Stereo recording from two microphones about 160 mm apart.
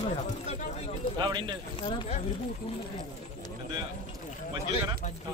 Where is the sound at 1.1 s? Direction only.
25° right (ahead or behind).